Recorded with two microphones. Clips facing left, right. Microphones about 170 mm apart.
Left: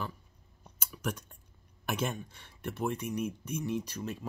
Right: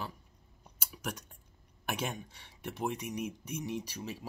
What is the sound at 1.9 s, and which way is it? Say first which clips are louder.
Speech: left 4 dB; 15° right (ahead or behind).